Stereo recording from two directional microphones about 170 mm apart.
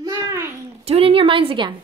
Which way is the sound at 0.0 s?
20° right (ahead or behind).